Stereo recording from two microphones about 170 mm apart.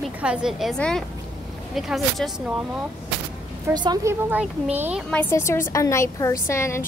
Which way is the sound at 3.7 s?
25° right (ahead or behind).